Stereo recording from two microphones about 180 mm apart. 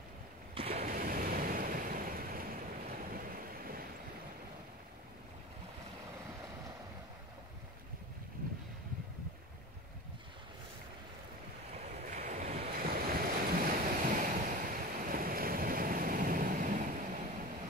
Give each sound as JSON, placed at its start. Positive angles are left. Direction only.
{"t": 0.7, "sound": "waves", "side_deg": -55}
{"t": 11.8, "sound": "waves", "side_deg": -45}